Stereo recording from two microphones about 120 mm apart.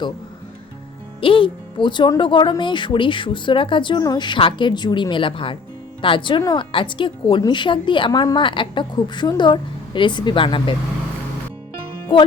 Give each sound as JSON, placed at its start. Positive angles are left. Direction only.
{"t": 1.2, "sound": "a woman's voice", "side_deg": 45}